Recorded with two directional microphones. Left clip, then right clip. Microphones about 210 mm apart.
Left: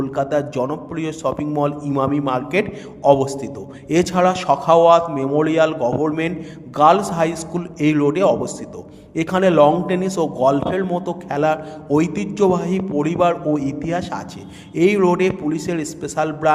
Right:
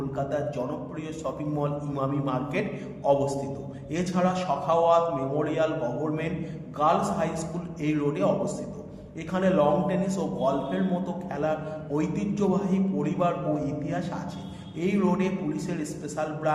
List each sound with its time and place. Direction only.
0.2 s a man's voice: 50° left (ahead or behind)